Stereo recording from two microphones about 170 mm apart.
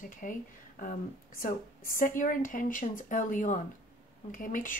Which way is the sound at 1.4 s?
55° left (ahead or behind).